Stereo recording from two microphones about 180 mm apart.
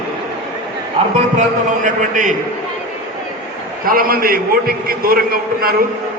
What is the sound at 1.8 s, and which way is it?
Speech, 45° right (ahead or behind).